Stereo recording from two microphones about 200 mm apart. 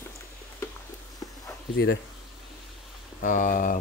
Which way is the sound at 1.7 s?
50° left (ahead or behind).